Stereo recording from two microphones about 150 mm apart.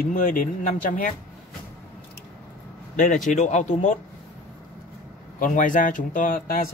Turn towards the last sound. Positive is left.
turn(degrees=65)  # may be behind; listen again after turning